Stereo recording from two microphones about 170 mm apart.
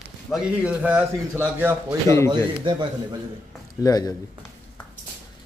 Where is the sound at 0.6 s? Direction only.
10° right (ahead or behind).